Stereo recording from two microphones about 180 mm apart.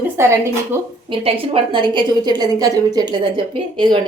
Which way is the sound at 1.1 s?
30° right (ahead or behind).